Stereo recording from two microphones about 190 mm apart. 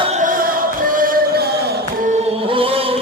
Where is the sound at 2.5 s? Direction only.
30° right (ahead or behind).